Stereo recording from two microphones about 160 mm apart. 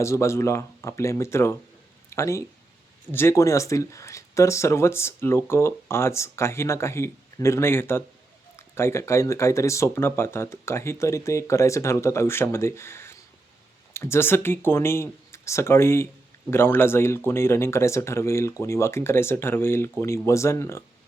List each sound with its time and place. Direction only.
0.0 s speech: 20° left (ahead or behind)